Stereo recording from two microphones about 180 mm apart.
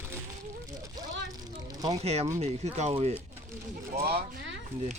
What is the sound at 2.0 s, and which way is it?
Speech, 35° right (ahead or behind).